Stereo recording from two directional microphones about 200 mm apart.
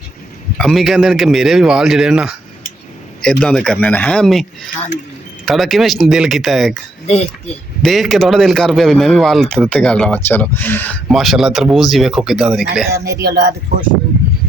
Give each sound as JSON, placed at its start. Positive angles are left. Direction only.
{"t": 0.5, "sound": "a man's voice", "side_deg": 0}
{"t": 7.1, "sound": "speech", "side_deg": 30}
{"t": 7.8, "sound": "a man's voice", "side_deg": 0}
{"t": 13.2, "sound": "speech", "side_deg": -55}